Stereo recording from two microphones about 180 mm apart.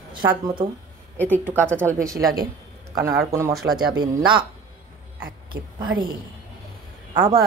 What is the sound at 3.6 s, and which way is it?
Speech, centre (ahead or behind).